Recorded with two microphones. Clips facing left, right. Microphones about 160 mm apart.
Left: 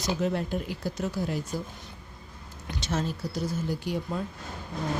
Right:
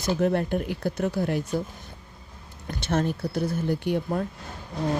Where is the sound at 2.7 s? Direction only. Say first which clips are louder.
Right 5 dB; 60° right (ahead or behind).